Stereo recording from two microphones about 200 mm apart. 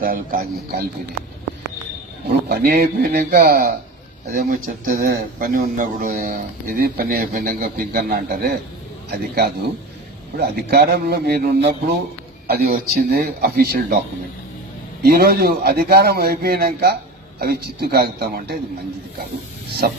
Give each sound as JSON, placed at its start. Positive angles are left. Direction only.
{"t": 0.0, "sound": "speech", "side_deg": -45}
{"t": 2.5, "sound": "speech", "side_deg": -50}
{"t": 15.0, "sound": "speech", "side_deg": -50}